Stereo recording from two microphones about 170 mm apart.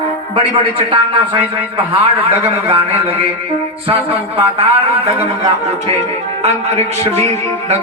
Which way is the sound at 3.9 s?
35° right (ahead or behind).